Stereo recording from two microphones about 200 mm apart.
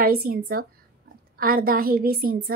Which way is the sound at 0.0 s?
50° right (ahead or behind).